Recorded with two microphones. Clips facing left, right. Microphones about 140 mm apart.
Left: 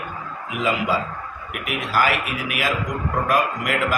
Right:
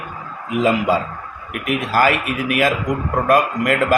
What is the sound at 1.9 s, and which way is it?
A man's voice, 45° right (ahead or behind).